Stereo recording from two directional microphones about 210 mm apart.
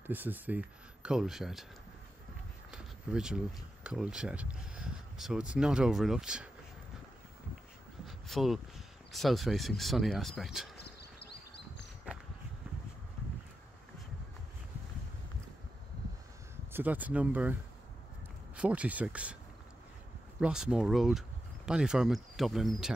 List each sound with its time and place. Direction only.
0.0 s speech: 10° right (ahead or behind)
2.7 s speech: 5° right (ahead or behind)
8.3 s speech: centre (ahead or behind)
16.7 s speech: 10° right (ahead or behind)
18.6 s speech: 5° right (ahead or behind)
20.3 s speech: 5° right (ahead or behind)